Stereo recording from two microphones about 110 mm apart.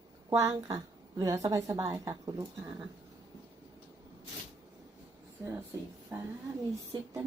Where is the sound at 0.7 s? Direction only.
35° right (ahead or behind).